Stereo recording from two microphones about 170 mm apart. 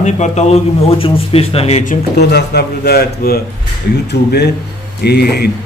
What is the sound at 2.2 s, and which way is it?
A man's voice, 75° left (ahead or behind).